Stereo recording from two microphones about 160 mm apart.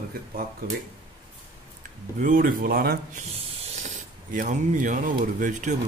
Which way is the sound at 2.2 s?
60° right (ahead or behind).